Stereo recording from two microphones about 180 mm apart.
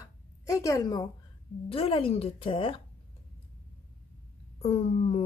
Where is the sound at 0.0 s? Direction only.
15° left (ahead or behind).